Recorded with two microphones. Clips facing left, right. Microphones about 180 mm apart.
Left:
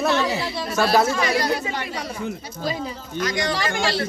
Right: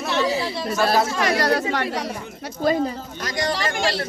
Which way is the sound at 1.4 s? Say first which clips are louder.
Right 4 dB; 80° right.